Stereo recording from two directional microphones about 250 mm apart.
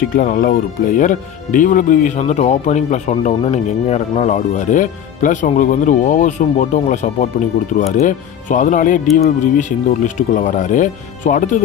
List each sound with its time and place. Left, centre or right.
0.1 s speech: left